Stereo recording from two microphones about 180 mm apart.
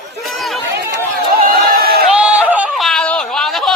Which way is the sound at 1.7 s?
55° right (ahead or behind).